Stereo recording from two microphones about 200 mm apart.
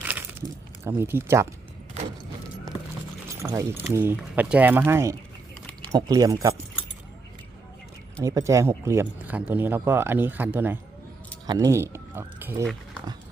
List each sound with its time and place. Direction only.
0.0 s a sound: 10° right (ahead or behind)
0.9 s speech: 10° right (ahead or behind)
3.2 s speech: 15° right (ahead or behind)
8.2 s speech: 15° right (ahead or behind)